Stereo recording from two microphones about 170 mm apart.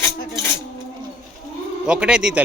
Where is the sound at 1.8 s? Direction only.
5° right (ahead or behind).